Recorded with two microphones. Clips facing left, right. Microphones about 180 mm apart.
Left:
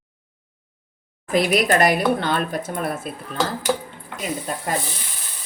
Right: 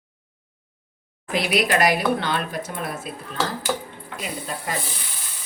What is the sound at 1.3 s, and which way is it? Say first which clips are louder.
Speech: left 3 dB; 45° left (ahead or behind).